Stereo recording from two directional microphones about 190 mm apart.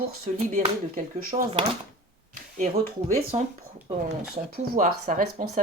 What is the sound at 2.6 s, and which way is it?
Speech, 40° right (ahead or behind).